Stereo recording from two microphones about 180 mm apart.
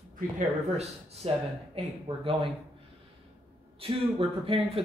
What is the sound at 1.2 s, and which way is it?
Speech, 35° right (ahead or behind).